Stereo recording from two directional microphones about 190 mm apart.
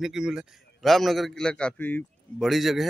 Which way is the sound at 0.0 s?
5° right (ahead or behind).